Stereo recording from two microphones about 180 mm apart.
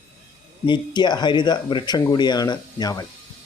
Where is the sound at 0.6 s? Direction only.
25° left (ahead or behind).